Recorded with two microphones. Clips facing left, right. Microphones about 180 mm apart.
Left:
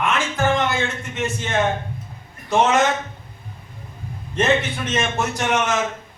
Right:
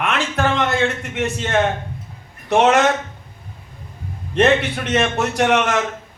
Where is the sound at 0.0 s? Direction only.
65° right (ahead or behind).